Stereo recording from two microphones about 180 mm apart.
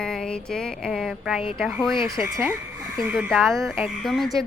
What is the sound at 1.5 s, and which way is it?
Speech, centre (ahead or behind).